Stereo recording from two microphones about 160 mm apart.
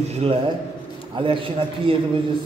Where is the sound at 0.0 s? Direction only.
40° right (ahead or behind).